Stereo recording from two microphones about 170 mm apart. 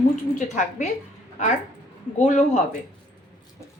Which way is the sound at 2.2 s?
45° left (ahead or behind).